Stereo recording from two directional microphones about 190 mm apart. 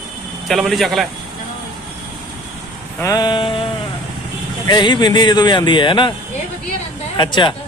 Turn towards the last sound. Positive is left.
turn(degrees=25)  # may be behind; listen again after turning